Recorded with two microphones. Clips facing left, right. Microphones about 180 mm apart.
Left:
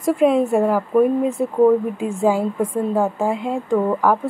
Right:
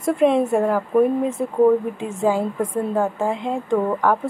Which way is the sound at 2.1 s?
10° left (ahead or behind).